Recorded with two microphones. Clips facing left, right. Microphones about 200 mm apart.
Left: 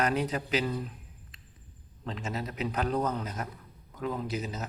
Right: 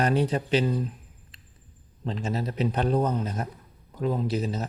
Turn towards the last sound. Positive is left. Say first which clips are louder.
# right 6 dB
turn(degrees=-30)  # may be behind; listen again after turning